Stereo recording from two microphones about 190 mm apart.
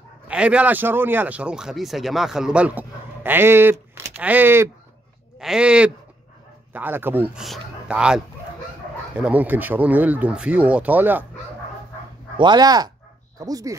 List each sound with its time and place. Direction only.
0.3 s speech: 5° right (ahead or behind)
12.4 s speech: 20° right (ahead or behind)